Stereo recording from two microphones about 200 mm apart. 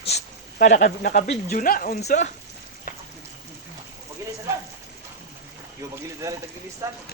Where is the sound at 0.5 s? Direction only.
40° left (ahead or behind).